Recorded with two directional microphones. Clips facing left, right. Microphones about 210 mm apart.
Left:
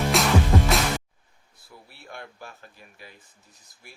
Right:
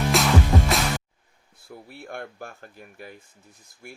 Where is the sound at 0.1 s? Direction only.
Centre (ahead or behind).